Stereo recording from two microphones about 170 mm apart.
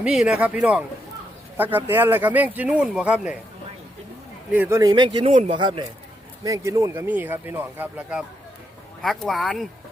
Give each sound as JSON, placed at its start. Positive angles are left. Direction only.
{"t": 0.0, "sound": "speech", "side_deg": -5}
{"t": 4.5, "sound": "speech", "side_deg": -10}
{"t": 4.8, "sound": "a man's voice", "side_deg": -25}
{"t": 9.0, "sound": "speech", "side_deg": 0}